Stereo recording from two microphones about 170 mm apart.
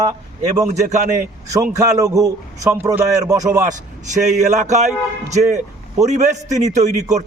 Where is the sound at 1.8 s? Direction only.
20° right (ahead or behind).